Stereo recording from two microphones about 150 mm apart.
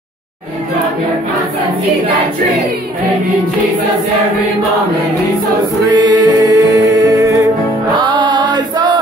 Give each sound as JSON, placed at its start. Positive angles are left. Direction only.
{"t": 5.9, "sound": "music", "side_deg": -30}